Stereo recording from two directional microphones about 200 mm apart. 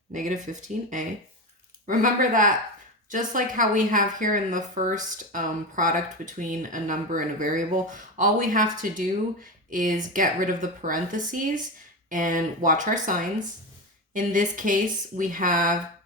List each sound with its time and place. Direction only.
0.1 s a woman's voice: 40° right (ahead or behind)